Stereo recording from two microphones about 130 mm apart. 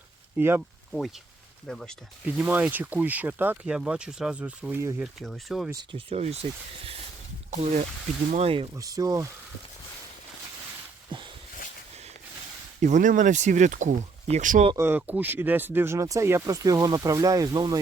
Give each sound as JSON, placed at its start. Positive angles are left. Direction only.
{"t": 0.3, "sound": "speech", "side_deg": -20}
{"t": 1.6, "sound": "speech", "side_deg": 5}
{"t": 2.2, "sound": "speech", "side_deg": -15}
{"t": 5.2, "sound": "speech", "side_deg": 0}
{"t": 5.9, "sound": "speech", "side_deg": -50}
{"t": 8.7, "sound": "speech", "side_deg": -25}
{"t": 11.1, "sound": "a sound", "side_deg": -40}
{"t": 12.8, "sound": "speech", "side_deg": -80}
{"t": 14.8, "sound": "speech", "side_deg": -15}